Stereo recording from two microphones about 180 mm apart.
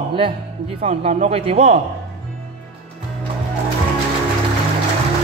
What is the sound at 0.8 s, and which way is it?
Speech, 35° right (ahead or behind).